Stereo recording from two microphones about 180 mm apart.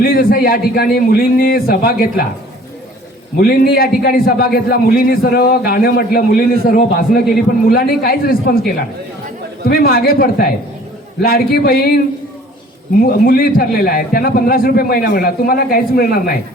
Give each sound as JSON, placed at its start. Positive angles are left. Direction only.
{"t": 0.0, "sound": "a man's voice", "side_deg": 55}
{"t": 3.4, "sound": "a man's voice", "side_deg": 55}
{"t": 13.0, "sound": "a man's voice", "side_deg": 55}